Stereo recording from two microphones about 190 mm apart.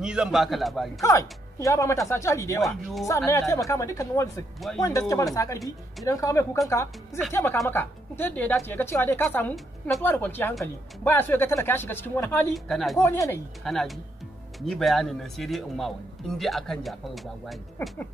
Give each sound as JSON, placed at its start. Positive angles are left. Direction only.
{"t": 0.0, "sound": "a man's voice", "side_deg": -5}
{"t": 1.0, "sound": "a woman's voice", "side_deg": 15}
{"t": 2.6, "sound": "a man's voice", "side_deg": 0}
{"t": 3.3, "sound": "a woman's voice", "side_deg": 15}
{"t": 7.6, "sound": "a woman's voice", "side_deg": 10}
{"t": 12.5, "sound": "a man's voice", "side_deg": 0}
{"t": 13.0, "sound": "a woman's voice", "side_deg": 10}
{"t": 13.7, "sound": "a man's voice", "side_deg": 0}